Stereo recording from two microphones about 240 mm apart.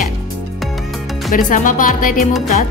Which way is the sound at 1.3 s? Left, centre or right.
Left.